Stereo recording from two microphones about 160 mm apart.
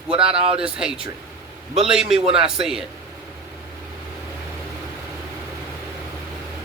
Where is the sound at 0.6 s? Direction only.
5° right (ahead or behind).